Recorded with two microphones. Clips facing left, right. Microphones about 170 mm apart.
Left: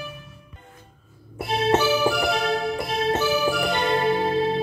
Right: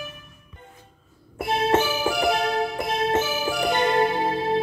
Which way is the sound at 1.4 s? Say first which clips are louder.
Left 1 dB; 50° right (ahead or behind).